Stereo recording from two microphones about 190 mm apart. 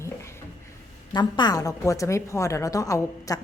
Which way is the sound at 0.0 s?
15° left (ahead or behind).